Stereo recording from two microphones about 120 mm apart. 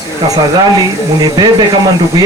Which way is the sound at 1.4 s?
35° right (ahead or behind).